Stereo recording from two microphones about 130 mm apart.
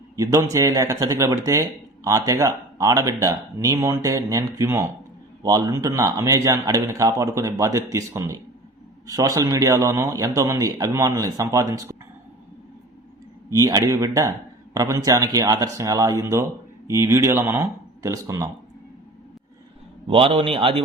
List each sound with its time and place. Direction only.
0.2 s a man's voice: 25° right (ahead or behind)
13.5 s a man's voice: 25° right (ahead or behind)
20.1 s a man's voice: 45° right (ahead or behind)